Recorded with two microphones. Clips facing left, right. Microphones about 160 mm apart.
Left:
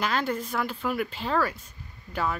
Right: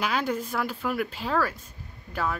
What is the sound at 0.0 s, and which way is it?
Speech, 5° right (ahead or behind).